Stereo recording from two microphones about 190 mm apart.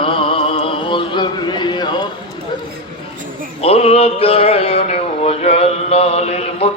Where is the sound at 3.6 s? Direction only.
30° left (ahead or behind).